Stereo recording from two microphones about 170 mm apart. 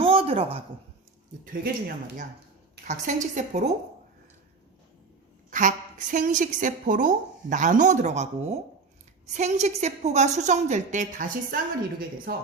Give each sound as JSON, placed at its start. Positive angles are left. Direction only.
{"t": 0.0, "sound": "a sound", "side_deg": -35}
{"t": 2.8, "sound": "a woman's voice", "side_deg": -45}
{"t": 5.5, "sound": "a woman's voice", "side_deg": -50}